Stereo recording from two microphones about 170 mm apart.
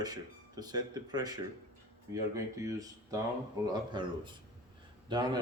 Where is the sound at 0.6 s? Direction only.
25° right (ahead or behind).